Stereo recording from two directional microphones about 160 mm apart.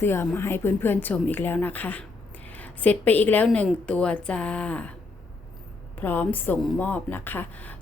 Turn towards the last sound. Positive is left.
turn(degrees=10)  # may be behind; listen again after turning